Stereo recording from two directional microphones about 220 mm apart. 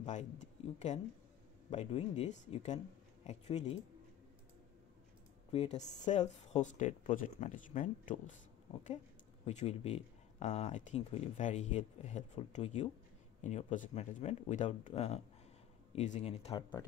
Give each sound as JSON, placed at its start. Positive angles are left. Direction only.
{"t": 0.0, "sound": "speech", "side_deg": 35}
{"t": 5.5, "sound": "speech", "side_deg": 30}